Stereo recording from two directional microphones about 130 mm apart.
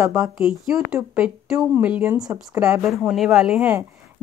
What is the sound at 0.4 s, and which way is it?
A woman's voice, 5° right (ahead or behind).